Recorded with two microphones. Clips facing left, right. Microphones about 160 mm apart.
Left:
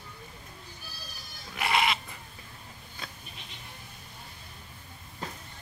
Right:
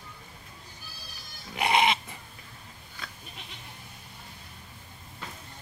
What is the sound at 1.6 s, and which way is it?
Goat, 20° right (ahead or behind).